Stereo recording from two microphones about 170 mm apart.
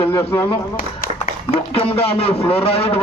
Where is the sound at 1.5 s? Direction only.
35° left (ahead or behind).